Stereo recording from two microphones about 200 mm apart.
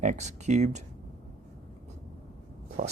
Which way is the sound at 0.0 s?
35° right (ahead or behind).